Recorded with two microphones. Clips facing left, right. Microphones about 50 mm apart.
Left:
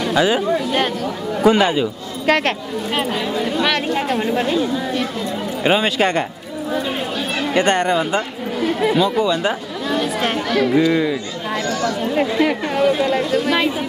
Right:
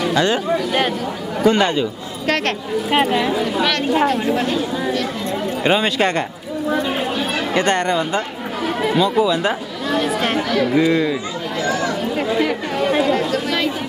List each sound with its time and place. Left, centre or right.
0.1 s speech: centre
1.4 s speech: centre
2.9 s speech: centre
3.3 s speech: centre
6.7 s chatter: centre
8.8 s speech: centre
12.2 s speech: centre